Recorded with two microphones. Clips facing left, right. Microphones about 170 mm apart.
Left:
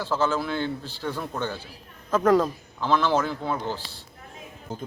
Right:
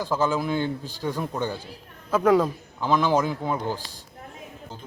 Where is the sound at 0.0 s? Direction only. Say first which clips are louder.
Right 1 dB; 15° right (ahead or behind).